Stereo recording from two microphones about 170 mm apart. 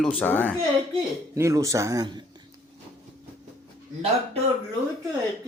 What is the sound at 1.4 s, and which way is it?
Speech, 20° right (ahead or behind).